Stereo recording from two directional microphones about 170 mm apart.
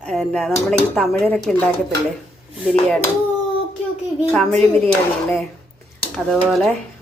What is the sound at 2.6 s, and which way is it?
Speech, 5° right (ahead or behind).